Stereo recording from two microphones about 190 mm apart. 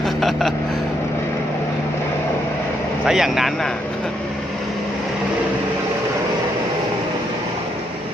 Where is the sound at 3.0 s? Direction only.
Centre (ahead or behind).